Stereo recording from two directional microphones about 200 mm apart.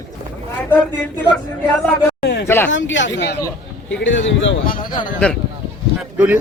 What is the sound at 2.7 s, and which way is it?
Speech, 65° left (ahead or behind).